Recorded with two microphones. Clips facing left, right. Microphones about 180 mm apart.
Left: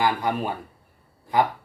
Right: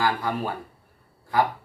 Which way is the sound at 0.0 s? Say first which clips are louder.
Left 2 dB; 20° left (ahead or behind).